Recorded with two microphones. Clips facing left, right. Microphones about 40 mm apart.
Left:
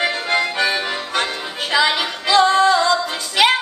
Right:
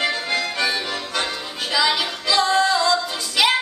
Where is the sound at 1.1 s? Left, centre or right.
Left.